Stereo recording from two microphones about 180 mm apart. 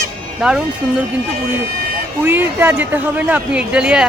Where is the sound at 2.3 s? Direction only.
10° right (ahead or behind).